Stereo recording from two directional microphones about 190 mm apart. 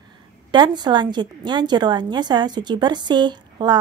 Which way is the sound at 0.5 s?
25° right (ahead or behind).